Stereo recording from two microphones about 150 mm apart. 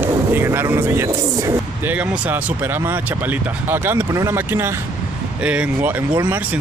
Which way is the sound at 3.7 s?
15° right (ahead or behind).